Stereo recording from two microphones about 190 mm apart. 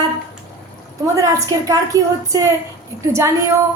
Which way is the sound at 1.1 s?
15° right (ahead or behind).